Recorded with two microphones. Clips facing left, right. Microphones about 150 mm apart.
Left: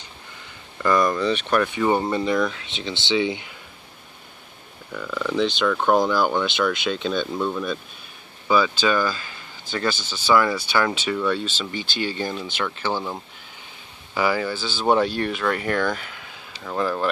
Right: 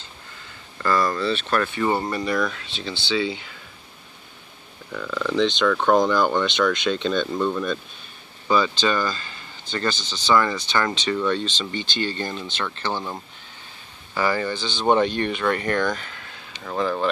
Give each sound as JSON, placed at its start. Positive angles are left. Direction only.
{"t": 0.8, "sound": "speech", "side_deg": 15}
{"t": 4.9, "sound": "speech", "side_deg": 5}